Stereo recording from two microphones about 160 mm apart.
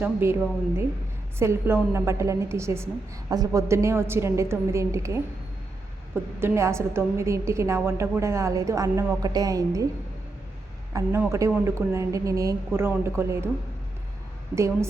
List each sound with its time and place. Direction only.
0.0 s a woman's voice: 15° right (ahead or behind)
1.4 s a woman's voice: 15° right (ahead or behind)
6.4 s a woman's voice: 15° right (ahead or behind)
10.9 s a woman's voice: 15° right (ahead or behind)
14.5 s a woman's voice: 15° right (ahead or behind)